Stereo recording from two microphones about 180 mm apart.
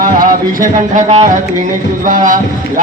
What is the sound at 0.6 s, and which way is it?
A man's voice, 45° right (ahead or behind).